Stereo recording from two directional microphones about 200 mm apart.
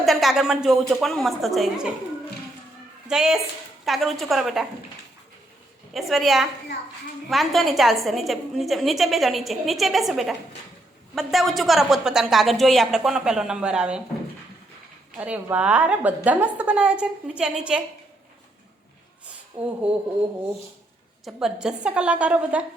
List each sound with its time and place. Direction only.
0.0 s a woman's voice: centre (ahead or behind)
3.1 s a woman's voice: centre (ahead or behind)
5.9 s a woman's voice: centre (ahead or behind)
15.2 s a woman's voice: 5° right (ahead or behind)
19.6 s a sound: 30° right (ahead or behind)
21.2 s a woman's voice: 5° right (ahead or behind)